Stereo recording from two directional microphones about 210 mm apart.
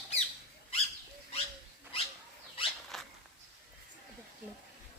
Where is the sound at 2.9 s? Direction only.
Centre (ahead or behind).